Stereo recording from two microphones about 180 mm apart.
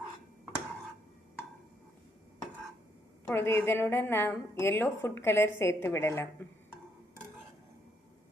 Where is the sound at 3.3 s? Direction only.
15° left (ahead or behind).